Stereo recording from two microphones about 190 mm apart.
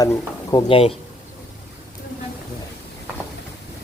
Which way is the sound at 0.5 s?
30° left (ahead or behind).